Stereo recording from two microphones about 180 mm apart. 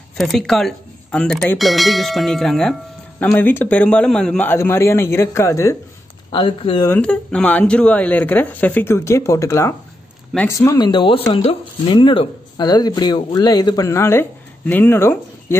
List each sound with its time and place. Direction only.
0.2 s speech: centre (ahead or behind); by 5.8 s 15° left (ahead or behind)
6.3 s speech: 30° left (ahead or behind)
6.9 s speech: 5° left (ahead or behind)